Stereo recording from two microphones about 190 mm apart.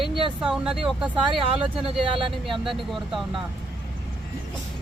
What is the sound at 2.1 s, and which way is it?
Speech, 30° right (ahead or behind).